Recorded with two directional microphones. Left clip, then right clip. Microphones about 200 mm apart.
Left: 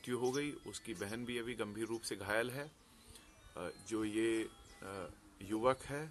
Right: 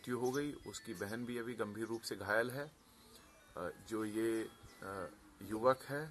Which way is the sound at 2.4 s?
25° left (ahead or behind).